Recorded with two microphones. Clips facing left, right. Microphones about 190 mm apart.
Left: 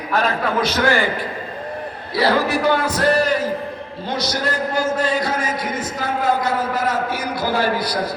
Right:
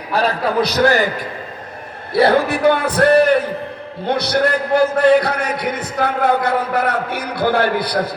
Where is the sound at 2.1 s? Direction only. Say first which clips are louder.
Right 4 dB; 55° right (ahead or behind).